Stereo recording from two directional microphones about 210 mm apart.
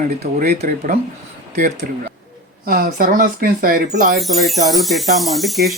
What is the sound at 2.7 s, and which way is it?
Speech, 45° right (ahead or behind).